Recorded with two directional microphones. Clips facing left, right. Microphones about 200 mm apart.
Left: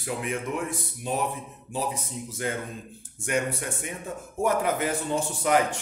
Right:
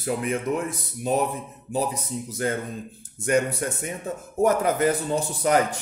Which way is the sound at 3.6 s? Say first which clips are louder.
Right 5 dB; 40° right (ahead or behind).